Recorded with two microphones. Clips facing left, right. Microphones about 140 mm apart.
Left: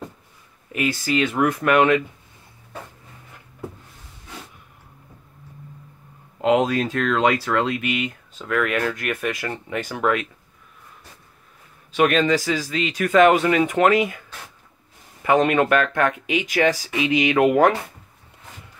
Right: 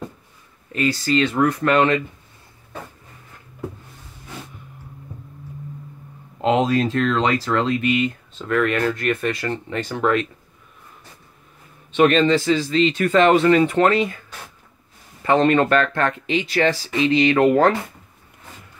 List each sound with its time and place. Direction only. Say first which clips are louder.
0.7 s speech: right 2 dB; 15° left (ahead or behind)
6.4 s speech: right 1 dB; centre (ahead or behind)
11.9 s speech: right 3 dB; 5° left (ahead or behind)
15.2 s speech: right 1 dB; 10° left (ahead or behind)